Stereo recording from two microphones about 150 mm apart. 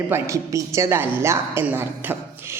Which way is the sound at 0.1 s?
20° right (ahead or behind).